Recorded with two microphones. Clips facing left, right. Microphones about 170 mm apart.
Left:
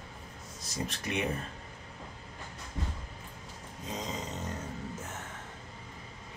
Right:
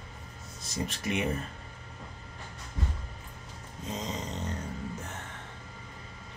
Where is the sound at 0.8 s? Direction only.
Centre (ahead or behind).